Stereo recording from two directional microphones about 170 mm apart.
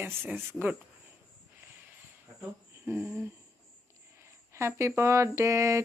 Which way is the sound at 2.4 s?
10° right (ahead or behind).